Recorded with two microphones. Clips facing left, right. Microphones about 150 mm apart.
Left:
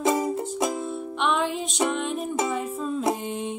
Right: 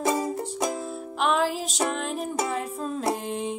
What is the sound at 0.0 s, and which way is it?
Music, 20° left (ahead or behind).